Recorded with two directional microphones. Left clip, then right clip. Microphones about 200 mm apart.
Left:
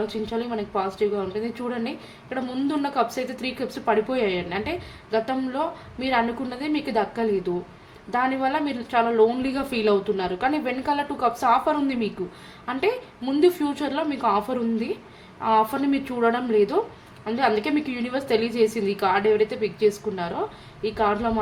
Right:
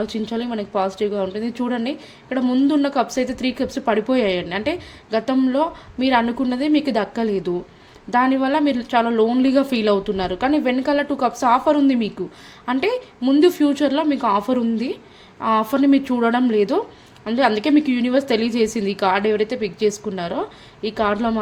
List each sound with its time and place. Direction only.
0.0 s a woman's voice: 40° right (ahead or behind)